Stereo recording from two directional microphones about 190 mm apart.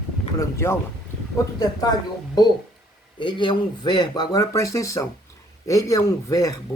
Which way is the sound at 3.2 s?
25° left (ahead or behind).